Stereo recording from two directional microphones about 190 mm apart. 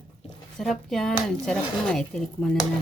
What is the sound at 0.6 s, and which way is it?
Speech, centre (ahead or behind).